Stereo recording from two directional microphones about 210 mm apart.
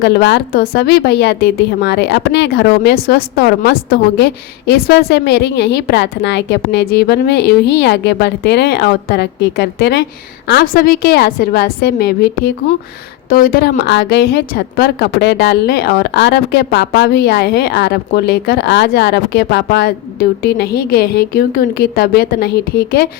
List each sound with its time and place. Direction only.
0.0 s a woman's voice: 55° left (ahead or behind)